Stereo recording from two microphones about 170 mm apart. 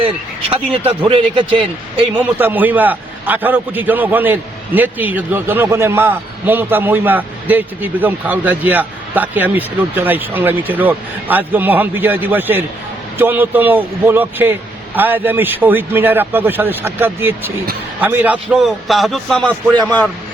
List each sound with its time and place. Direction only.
0.5 s a man's voice: 30° right (ahead or behind)
2.1 s a man's voice: 10° right (ahead or behind)
19.5 s a man's voice: 25° right (ahead or behind)